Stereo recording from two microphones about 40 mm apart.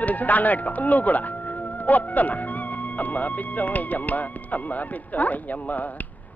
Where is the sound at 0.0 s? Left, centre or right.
Left.